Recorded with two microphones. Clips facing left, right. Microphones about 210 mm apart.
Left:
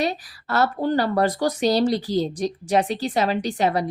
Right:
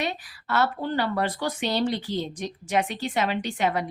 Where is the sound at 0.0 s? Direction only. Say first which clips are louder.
Left 5 dB; 40° left (ahead or behind).